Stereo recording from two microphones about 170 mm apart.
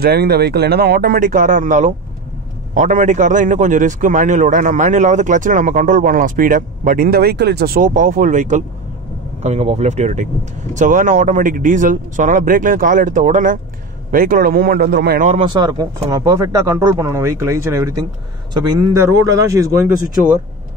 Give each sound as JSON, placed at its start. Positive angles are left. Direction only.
{"t": 0.0, "sound": "a man's voice", "side_deg": -70}
{"t": 15.5, "sound": "speech", "side_deg": -25}